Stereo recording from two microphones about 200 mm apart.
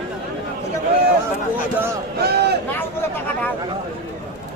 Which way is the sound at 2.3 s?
55° right (ahead or behind).